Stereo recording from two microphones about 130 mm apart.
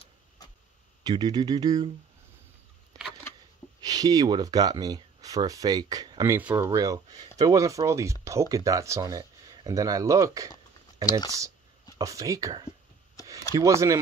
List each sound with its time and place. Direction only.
1.0 s speech: 35° right (ahead or behind)
3.8 s speech: 30° right (ahead or behind)
6.3 s speech: 20° right (ahead or behind)
11.1 s speech: 30° left (ahead or behind)
12.0 s speech: 25° right (ahead or behind)
13.2 s a sound: 25° left (ahead or behind)
13.6 s speech: 25° right (ahead or behind)